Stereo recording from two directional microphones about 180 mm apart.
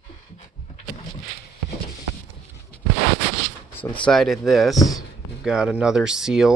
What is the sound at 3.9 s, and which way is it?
Speech, 5° left (ahead or behind).